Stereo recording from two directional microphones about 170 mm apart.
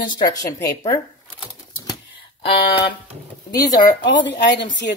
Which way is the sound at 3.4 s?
20° left (ahead or behind).